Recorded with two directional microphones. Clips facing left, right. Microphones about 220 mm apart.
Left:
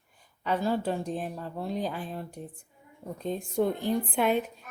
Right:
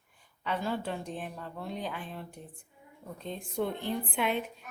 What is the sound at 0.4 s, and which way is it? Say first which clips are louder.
Speech: left 5 dB; 40° left (ahead or behind).